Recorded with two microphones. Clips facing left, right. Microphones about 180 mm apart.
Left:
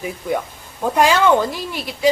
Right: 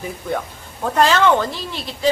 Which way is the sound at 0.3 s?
15° left (ahead or behind).